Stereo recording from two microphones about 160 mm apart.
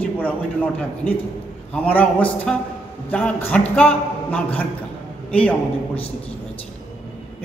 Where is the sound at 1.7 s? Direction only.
10° left (ahead or behind).